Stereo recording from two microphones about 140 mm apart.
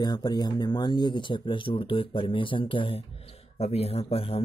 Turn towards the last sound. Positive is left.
turn(degrees=45)  # may be behind; listen again after turning